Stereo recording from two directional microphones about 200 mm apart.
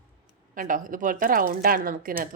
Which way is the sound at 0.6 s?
40° right (ahead or behind).